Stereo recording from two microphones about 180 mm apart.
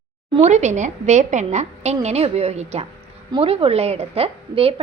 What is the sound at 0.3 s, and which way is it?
A woman's voice, 40° right (ahead or behind).